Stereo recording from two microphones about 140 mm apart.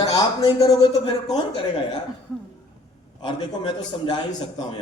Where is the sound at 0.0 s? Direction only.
30° left (ahead or behind).